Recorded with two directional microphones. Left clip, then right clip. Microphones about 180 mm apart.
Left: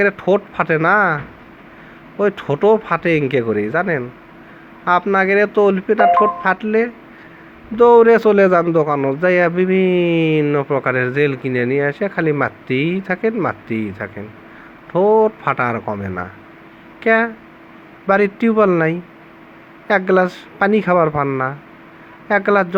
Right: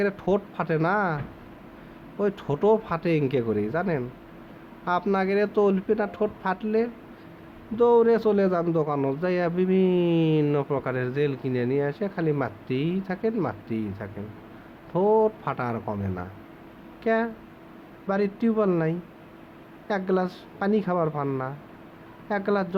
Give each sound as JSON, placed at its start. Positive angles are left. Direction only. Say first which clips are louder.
{"t": 0.0, "sound": "speech", "louder": "left 10 dB", "side_deg": 15}